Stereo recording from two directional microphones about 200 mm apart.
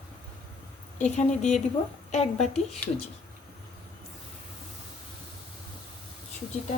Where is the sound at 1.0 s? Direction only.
35° left (ahead or behind).